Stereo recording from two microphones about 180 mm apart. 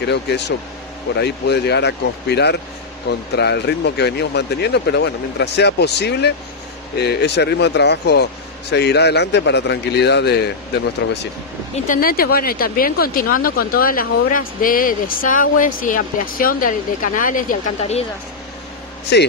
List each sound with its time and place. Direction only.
0.0 s speech: 70° left (ahead or behind)
11.7 s speech: 50° left (ahead or behind)